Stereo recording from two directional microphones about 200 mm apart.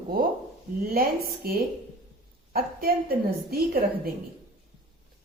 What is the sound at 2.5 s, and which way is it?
A woman's voice, 50° right (ahead or behind).